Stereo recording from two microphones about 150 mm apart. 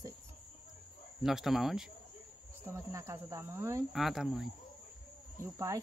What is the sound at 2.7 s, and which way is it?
Speech, 20° right (ahead or behind).